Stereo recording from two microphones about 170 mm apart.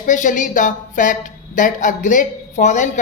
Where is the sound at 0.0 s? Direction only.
50° left (ahead or behind).